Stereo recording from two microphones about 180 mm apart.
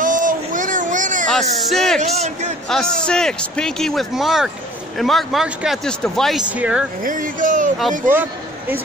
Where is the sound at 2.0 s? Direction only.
40° right (ahead or behind).